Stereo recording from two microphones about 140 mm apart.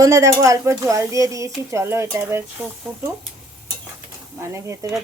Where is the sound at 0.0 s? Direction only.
20° right (ahead or behind).